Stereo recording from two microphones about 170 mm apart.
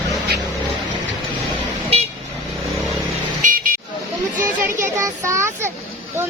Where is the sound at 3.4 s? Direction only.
55° right (ahead or behind).